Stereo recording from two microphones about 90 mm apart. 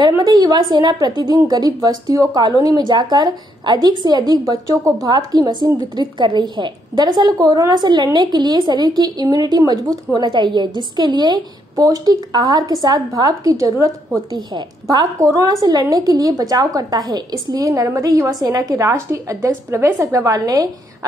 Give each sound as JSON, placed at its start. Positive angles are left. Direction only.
{"t": 0.2, "sound": "a woman's voice", "side_deg": -45}
{"t": 14.3, "sound": "a woman's voice", "side_deg": -50}
{"t": 15.1, "sound": "a woman's voice", "side_deg": -35}